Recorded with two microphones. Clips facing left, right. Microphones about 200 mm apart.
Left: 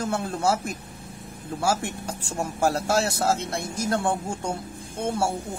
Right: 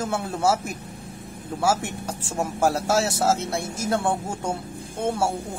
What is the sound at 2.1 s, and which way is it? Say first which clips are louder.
A man's voice: right 5 dB; centre (ahead or behind).